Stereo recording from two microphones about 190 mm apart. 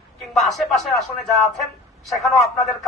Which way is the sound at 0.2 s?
Centre (ahead or behind).